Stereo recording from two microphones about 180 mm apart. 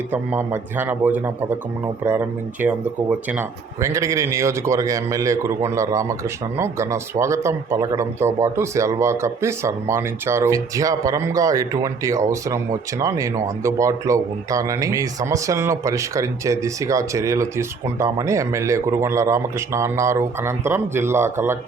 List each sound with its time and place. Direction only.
0.1 s speech: 10° right (ahead or behind)